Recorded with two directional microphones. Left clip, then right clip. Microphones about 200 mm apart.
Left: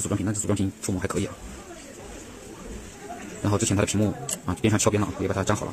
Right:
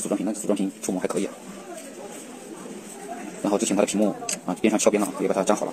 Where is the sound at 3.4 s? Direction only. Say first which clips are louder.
Right 3 dB; 15° left (ahead or behind).